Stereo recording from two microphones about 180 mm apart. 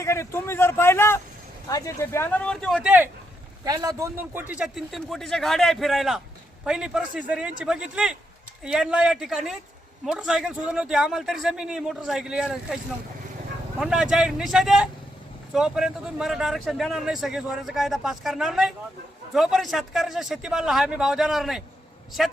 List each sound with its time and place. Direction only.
0.0 s speech: 15° left (ahead or behind); by 3.1 s 5° right (ahead or behind)
3.6 s speech: 20° right (ahead or behind); by 21.6 s centre (ahead or behind)